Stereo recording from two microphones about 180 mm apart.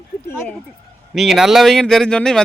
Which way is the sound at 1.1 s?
Centre (ahead or behind).